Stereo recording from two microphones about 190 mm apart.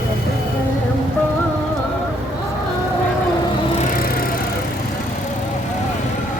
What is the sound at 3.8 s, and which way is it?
Music, 45° left (ahead or behind).